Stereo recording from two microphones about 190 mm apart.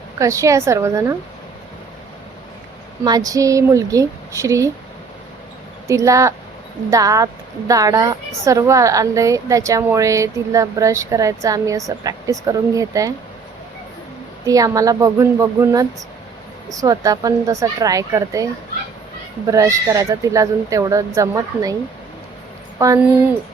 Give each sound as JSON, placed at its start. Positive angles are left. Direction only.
{"t": 0.2, "sound": "a woman's voice", "side_deg": -15}
{"t": 3.0, "sound": "a woman's voice", "side_deg": -20}
{"t": 5.9, "sound": "a woman's voice", "side_deg": -15}
{"t": 14.4, "sound": "a woman's voice", "side_deg": -20}
{"t": 19.5, "sound": "a woman's voice", "side_deg": -15}
{"t": 22.8, "sound": "a woman's voice", "side_deg": -15}